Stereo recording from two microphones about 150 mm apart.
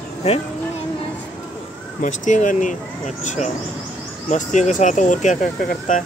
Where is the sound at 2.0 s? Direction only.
60° left (ahead or behind).